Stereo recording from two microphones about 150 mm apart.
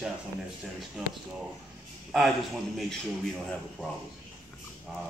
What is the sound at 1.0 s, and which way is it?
Speech, 5° right (ahead or behind).